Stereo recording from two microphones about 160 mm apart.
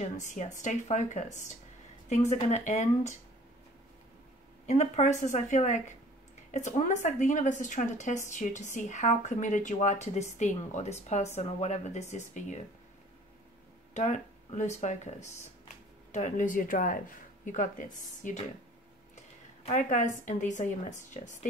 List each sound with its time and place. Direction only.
0.0 s a woman's voice: 50° left (ahead or behind)
4.6 s a woman's voice: 50° left (ahead or behind)
13.9 s a woman's voice: 50° left (ahead or behind)
19.1 s a sound: 50° left (ahead or behind)
20.2 s a woman's voice: 50° left (ahead or behind)